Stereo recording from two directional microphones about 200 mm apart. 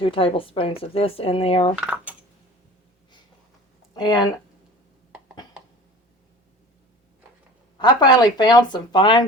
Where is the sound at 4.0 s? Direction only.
20° left (ahead or behind).